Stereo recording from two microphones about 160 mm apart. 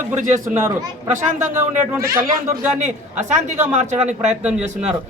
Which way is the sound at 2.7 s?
50° right (ahead or behind).